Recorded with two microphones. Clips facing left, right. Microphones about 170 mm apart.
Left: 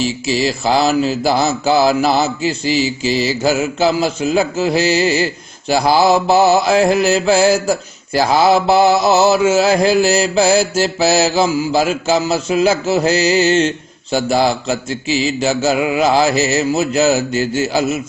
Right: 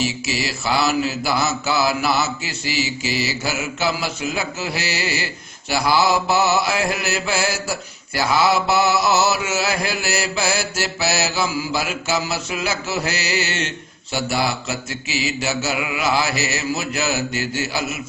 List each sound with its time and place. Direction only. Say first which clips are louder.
0.0 s mantra: left 7 dB; 35° left (ahead or behind)
15.2 s mantra: left 7 dB; 30° left (ahead or behind)